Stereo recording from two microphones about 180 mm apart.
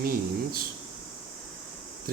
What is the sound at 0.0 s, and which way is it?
Speech, 55° right (ahead or behind).